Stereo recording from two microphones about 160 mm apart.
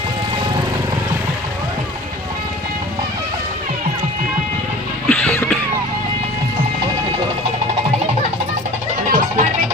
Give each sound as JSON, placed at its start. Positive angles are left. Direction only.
{"t": 5.0, "sound": "music", "side_deg": 5}
{"t": 9.0, "sound": "music", "side_deg": -60}